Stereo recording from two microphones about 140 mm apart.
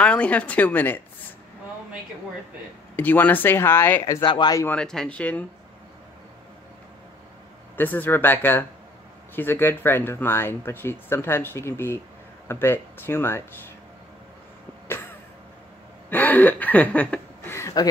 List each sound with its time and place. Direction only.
0.0 s speech: 10° left (ahead or behind)
3.0 s speech: 15° left (ahead or behind); by 4.6 s 30° left (ahead or behind)
4.6 s speech: 5° left (ahead or behind)
7.7 s speech: 15° left (ahead or behind)
16.1 s speech: 10° left (ahead or behind)